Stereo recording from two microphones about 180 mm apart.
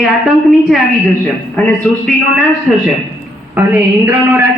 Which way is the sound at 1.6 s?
5° left (ahead or behind).